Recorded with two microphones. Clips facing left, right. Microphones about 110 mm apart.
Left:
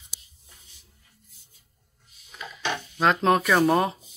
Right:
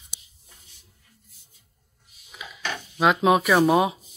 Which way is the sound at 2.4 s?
5° right (ahead or behind).